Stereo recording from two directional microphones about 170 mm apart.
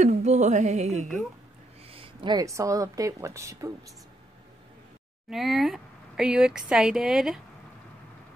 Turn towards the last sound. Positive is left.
turn(degrees=-5)  # may be behind; listen again after turning